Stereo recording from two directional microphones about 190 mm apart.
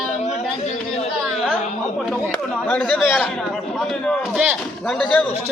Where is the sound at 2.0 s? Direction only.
5° left (ahead or behind).